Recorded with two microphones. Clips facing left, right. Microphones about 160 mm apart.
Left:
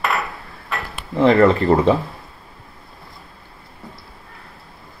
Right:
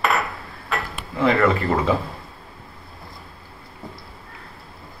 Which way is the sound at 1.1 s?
35° left (ahead or behind).